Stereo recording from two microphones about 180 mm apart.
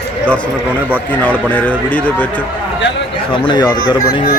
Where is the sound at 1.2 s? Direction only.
10° left (ahead or behind).